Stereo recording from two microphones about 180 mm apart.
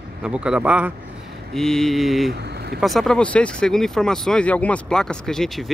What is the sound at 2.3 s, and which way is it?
Vehicle, 65° right (ahead or behind).